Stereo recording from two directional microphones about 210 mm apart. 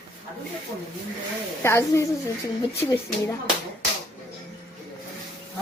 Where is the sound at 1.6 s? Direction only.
10° left (ahead or behind).